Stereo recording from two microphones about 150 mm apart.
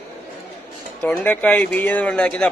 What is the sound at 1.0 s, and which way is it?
Speech, 10° left (ahead or behind).